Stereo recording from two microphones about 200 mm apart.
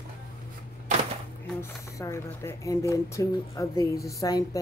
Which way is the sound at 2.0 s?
15° left (ahead or behind).